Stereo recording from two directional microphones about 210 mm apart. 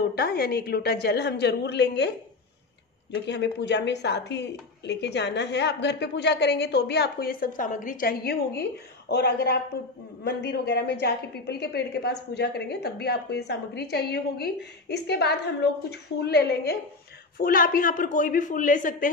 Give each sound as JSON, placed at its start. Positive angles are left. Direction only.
{"t": 0.0, "sound": "a woman's voice", "side_deg": 45}
{"t": 3.3, "sound": "a woman's voice", "side_deg": 55}